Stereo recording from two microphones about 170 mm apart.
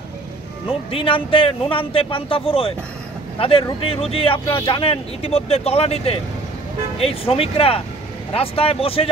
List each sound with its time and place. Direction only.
0.7 s a man's voice: 30° left (ahead or behind)